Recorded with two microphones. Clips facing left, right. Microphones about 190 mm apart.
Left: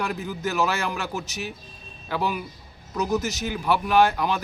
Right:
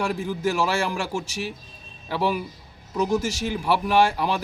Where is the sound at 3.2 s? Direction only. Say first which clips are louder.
Right 1 dB; 30° right (ahead or behind).